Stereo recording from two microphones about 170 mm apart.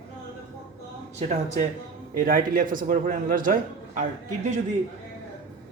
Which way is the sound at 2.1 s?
55° right (ahead or behind).